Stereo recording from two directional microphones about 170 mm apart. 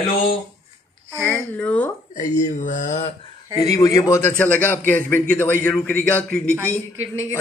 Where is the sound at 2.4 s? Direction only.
50° left (ahead or behind).